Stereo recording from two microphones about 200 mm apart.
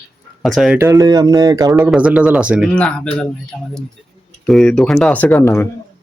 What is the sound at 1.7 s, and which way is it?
Speech, 5° right (ahead or behind).